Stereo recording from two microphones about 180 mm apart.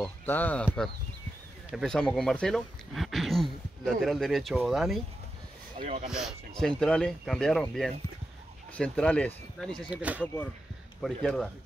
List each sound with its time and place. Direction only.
0.0 s speech: 10° left (ahead or behind)
1.7 s speech: centre (ahead or behind)
5.8 s speech: 40° right (ahead or behind)
6.0 s speech: 5° right (ahead or behind)
10.2 s speech: 10° left (ahead or behind)